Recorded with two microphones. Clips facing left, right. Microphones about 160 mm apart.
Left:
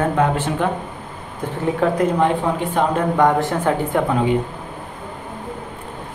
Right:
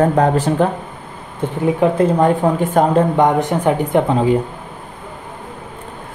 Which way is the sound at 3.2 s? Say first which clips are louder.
Right 2 dB; 20° right (ahead or behind).